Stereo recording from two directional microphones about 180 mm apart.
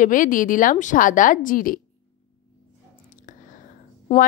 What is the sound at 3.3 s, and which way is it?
Whispering, 45° left (ahead or behind).